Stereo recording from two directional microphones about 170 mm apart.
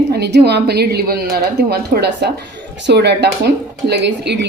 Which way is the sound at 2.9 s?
85° right.